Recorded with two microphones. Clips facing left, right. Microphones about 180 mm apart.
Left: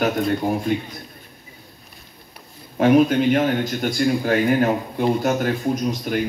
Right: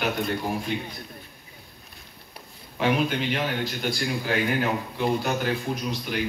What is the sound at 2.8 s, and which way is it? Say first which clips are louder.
A man's voice: left 9 dB; 45° left (ahead or behind).